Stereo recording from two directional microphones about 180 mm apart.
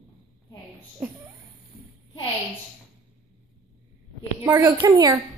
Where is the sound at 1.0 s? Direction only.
10° right (ahead or behind).